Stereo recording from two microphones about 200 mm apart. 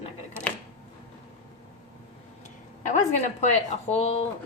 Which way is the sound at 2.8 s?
35° left (ahead or behind).